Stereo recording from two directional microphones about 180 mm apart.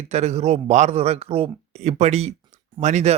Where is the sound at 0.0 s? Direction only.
35° right (ahead or behind).